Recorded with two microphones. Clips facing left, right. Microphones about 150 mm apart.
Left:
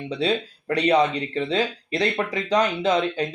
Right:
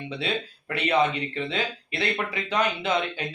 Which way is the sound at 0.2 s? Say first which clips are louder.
Left 7 dB; 35° left (ahead or behind).